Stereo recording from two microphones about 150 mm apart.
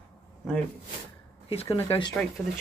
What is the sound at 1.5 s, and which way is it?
Speech, 40° left (ahead or behind).